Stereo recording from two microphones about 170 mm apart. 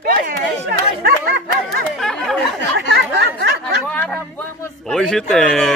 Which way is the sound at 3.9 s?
10° left (ahead or behind).